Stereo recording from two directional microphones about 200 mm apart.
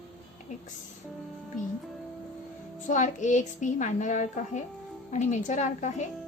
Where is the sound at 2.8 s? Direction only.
40° left (ahead or behind).